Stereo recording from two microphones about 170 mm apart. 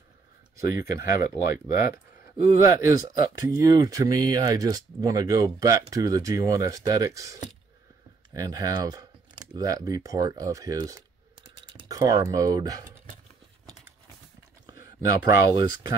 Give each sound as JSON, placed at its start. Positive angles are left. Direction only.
{"t": 0.7, "sound": "speech", "side_deg": -20}
{"t": 14.7, "sound": "speech", "side_deg": -20}